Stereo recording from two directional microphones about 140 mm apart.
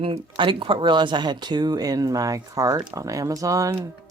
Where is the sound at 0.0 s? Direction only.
40° right (ahead or behind).